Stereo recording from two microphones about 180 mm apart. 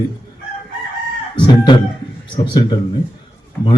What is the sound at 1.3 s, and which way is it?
A man's voice, 25° left (ahead or behind).